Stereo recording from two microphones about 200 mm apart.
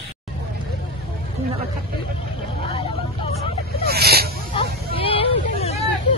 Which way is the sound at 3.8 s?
50° right (ahead or behind).